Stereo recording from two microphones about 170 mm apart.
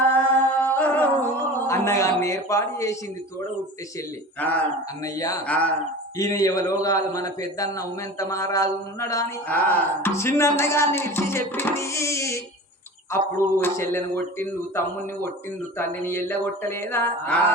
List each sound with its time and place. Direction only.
0.0 s music: 10° left (ahead or behind)
4.4 s a man's voice: 10° left (ahead or behind)
6.1 s a man's voice: 20° left (ahead or behind)